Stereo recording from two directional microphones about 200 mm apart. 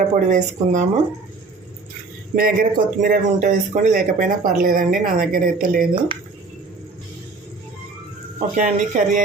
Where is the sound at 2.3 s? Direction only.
45° right (ahead or behind).